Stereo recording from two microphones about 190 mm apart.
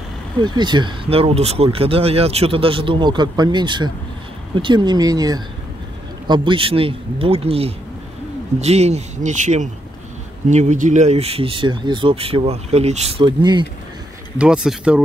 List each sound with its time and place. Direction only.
0.4 s speech: 25° right (ahead or behind)
14.4 s speech: 5° right (ahead or behind)